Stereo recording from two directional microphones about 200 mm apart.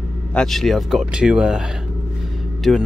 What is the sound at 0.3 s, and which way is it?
Speech, 5° left (ahead or behind).